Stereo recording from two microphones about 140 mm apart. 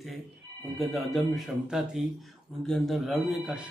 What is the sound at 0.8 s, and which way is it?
Speech, centre (ahead or behind).